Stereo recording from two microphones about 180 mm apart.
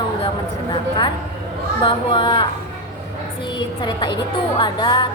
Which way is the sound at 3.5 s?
25° left (ahead or behind).